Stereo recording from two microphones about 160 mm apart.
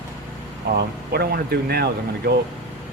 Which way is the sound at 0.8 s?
80° right.